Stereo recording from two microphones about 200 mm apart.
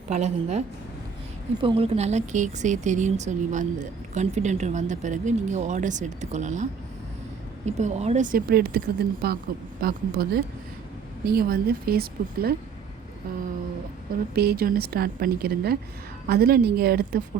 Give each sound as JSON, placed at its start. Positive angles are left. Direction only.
{"t": 0.1, "sound": "speech", "side_deg": -35}
{"t": 1.6, "sound": "speech", "side_deg": -30}
{"t": 14.3, "sound": "speech", "side_deg": -50}